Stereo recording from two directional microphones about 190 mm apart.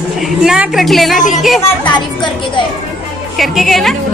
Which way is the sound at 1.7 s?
25° left (ahead or behind).